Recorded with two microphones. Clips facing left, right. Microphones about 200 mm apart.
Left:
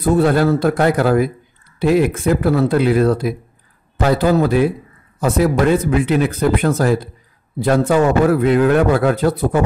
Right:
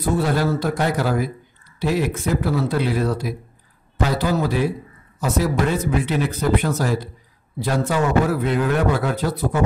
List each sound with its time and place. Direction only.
0.0 s a man's voice: 55° left (ahead or behind)